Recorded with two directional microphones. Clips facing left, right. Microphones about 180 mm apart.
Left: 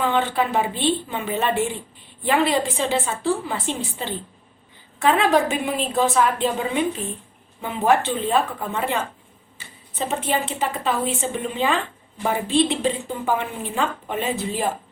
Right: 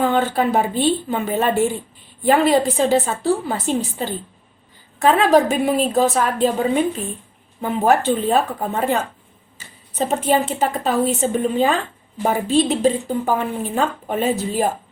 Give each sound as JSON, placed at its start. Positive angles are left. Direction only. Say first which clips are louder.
{"t": 0.0, "sound": "a woman's voice", "louder": "right 3 dB", "side_deg": -40}
{"t": 5.1, "sound": "a woman's voice", "louder": "right 5 dB", "side_deg": -40}
{"t": 10.2, "sound": "a woman's voice", "louder": "right 7 dB", "side_deg": -40}